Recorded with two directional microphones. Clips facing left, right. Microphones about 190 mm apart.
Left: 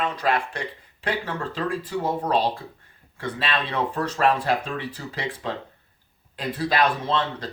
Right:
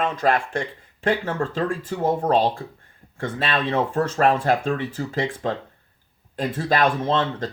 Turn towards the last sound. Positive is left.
turn(degrees=-45)  # may be behind; listen again after turning